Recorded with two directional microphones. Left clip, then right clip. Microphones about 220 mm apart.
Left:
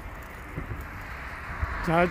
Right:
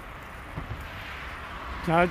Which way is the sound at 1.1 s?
35° right (ahead or behind).